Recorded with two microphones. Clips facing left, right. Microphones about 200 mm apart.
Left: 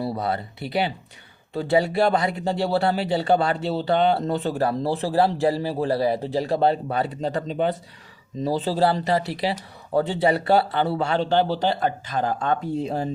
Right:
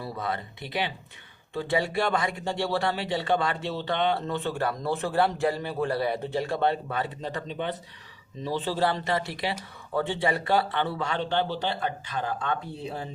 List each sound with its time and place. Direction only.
0.0 s speech: 40° left (ahead or behind)